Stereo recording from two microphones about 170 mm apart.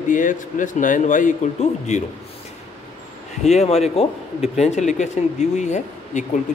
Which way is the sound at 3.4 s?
40° left (ahead or behind).